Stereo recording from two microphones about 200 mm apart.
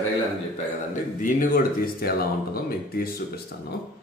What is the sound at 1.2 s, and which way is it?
Speech, 50° left (ahead or behind).